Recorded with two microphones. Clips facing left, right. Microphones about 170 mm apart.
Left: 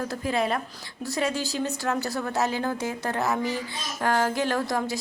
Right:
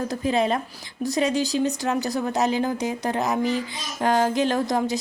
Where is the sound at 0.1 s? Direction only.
20° right (ahead or behind).